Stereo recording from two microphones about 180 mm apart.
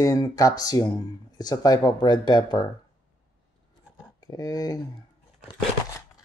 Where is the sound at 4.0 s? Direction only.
20° left (ahead or behind).